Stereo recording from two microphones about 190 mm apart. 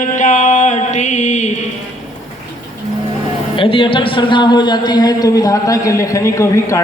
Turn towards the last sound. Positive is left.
turn(degrees=15)  # may be behind; listen again after turning